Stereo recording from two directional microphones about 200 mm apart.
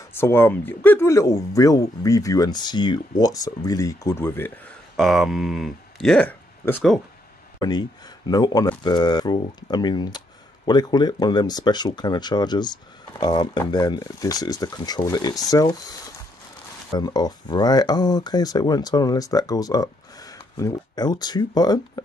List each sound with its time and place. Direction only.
0.1 s speech: 10° left (ahead or behind)
4.9 s speech: centre (ahead or behind)
8.3 s speech: 20° left (ahead or behind)
17.0 s speech: 20° left (ahead or behind)